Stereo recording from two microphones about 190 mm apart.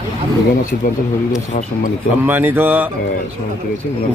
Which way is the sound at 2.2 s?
10° right (ahead or behind).